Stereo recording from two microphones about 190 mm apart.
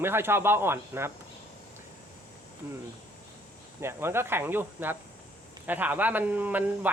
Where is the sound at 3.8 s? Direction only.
15° right (ahead or behind).